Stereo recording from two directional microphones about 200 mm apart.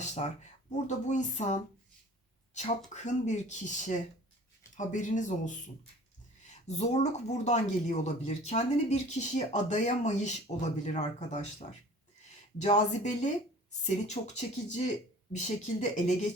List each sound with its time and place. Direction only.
0.0 s speech: 35° left (ahead or behind)
6.7 s speech: 35° left (ahead or behind)
12.5 s speech: 35° left (ahead or behind)